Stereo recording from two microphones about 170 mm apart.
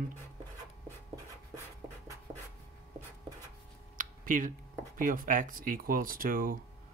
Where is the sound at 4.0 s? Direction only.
50° right (ahead or behind).